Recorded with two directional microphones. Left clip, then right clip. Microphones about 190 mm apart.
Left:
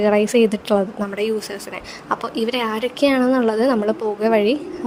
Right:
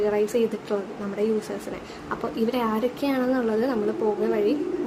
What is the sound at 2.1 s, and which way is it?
A woman's voice, 45° left (ahead or behind).